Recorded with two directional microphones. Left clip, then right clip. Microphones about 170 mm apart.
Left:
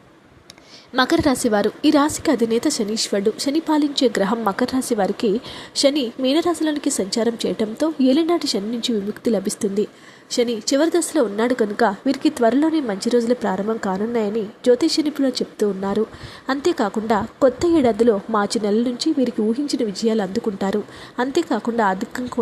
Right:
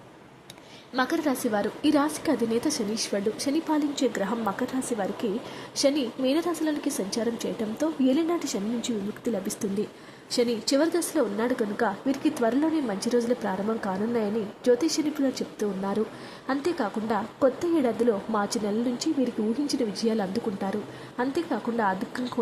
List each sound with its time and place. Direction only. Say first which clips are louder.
0.9 s a woman's voice: left 8 dB; 30° left (ahead or behind)